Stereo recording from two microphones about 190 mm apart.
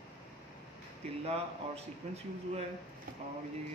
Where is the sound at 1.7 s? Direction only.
35° right (ahead or behind).